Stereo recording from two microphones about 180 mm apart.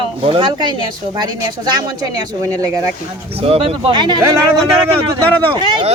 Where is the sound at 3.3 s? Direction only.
35° right (ahead or behind).